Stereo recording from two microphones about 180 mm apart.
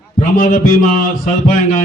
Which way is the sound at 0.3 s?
50° left (ahead or behind).